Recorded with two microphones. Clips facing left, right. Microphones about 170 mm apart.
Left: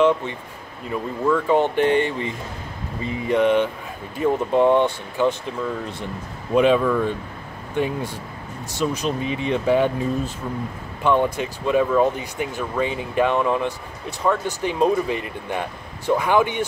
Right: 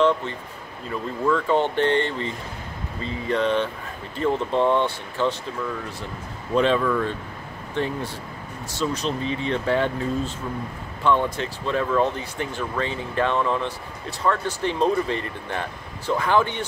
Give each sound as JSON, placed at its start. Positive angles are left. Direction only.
{"t": 0.0, "sound": "speech", "side_deg": 15}
{"t": 6.5, "sound": "speech", "side_deg": 10}